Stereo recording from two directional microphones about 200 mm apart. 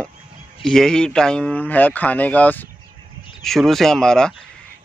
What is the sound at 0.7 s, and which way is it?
Speech, centre (ahead or behind).